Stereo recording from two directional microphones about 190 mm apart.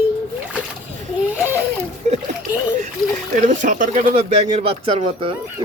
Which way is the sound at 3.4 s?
45° right (ahead or behind).